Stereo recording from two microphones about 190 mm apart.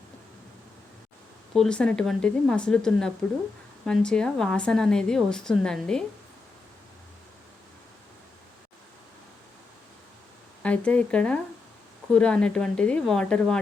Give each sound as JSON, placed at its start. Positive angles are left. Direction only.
{"t": 1.5, "sound": "a woman's voice", "side_deg": 5}
{"t": 10.6, "sound": "a woman's voice", "side_deg": 5}